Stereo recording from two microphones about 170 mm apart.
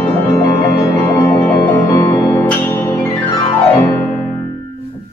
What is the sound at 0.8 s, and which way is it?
Music, 15° left (ahead or behind).